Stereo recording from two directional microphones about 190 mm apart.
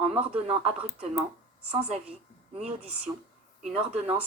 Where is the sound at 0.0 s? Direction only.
30° right (ahead or behind).